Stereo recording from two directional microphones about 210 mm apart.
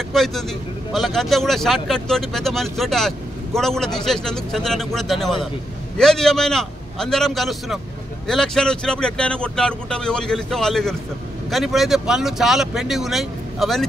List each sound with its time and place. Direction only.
0.1 s speech: centre (ahead or behind)